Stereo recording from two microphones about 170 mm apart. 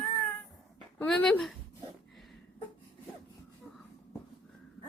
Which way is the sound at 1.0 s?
5° left (ahead or behind).